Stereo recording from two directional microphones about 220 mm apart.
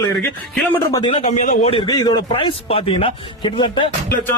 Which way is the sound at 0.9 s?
25° left (ahead or behind).